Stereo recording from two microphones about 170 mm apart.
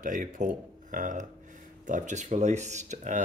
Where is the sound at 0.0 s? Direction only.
50° right (ahead or behind).